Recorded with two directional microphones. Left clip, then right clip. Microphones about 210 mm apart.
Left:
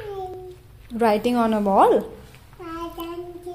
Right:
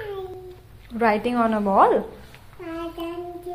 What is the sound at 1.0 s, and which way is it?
A woman's voice, 25° left (ahead or behind).